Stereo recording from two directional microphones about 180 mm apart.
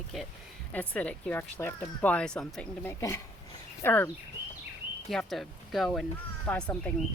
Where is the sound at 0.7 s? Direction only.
10° left (ahead or behind).